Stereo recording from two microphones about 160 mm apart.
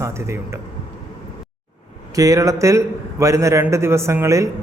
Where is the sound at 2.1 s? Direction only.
20° right (ahead or behind).